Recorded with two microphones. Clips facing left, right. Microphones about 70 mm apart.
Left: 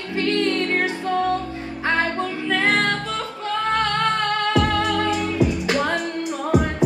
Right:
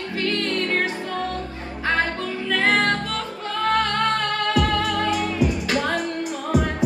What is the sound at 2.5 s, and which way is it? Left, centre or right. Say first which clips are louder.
Music: even; left.